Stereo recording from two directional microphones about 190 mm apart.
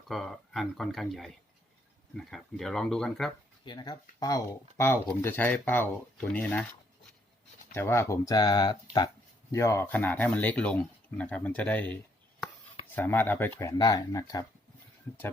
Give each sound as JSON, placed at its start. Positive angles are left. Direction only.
{"t": 0.1, "sound": "speech", "side_deg": 0}
{"t": 3.6, "sound": "speech", "side_deg": 25}
{"t": 7.7, "sound": "speech", "side_deg": 15}
{"t": 13.0, "sound": "speech", "side_deg": 10}